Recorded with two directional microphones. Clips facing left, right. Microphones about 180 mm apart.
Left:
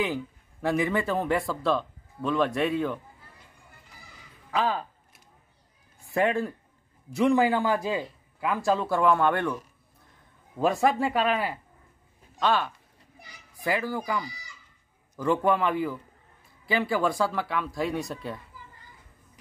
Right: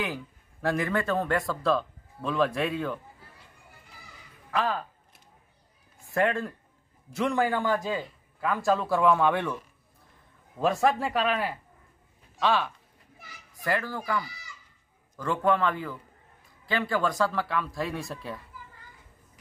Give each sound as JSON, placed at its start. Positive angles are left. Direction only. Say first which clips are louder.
{"t": 0.0, "sound": "speech", "louder": "left 4 dB", "side_deg": 0}
{"t": 4.5, "sound": "a sound", "louder": "left 1 dB", "side_deg": 0}
{"t": 6.1, "sound": "speech", "louder": "left 1 dB", "side_deg": 10}
{"t": 10.6, "sound": "speech", "louder": "left 1 dB", "side_deg": 0}